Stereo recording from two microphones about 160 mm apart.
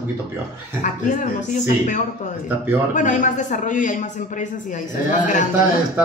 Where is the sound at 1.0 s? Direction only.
50° left (ahead or behind).